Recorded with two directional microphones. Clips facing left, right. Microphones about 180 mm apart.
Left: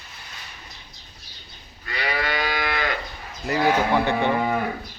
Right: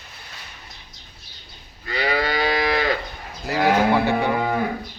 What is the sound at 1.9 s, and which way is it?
Moo, 30° right (ahead or behind).